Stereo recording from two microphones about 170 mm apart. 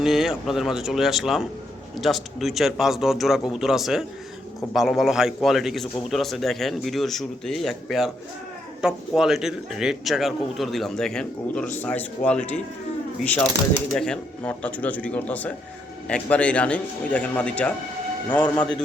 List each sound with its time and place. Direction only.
0.0 s a man's voice: centre (ahead or behind)
13.9 s speech: 5° left (ahead or behind)